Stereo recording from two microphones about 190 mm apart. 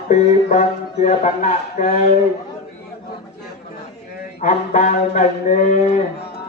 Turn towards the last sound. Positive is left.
turn(degrees=40)  # may be behind; listen again after turning